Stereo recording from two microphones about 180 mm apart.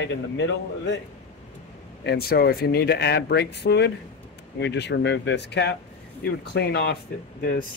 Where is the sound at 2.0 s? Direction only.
65° left (ahead or behind).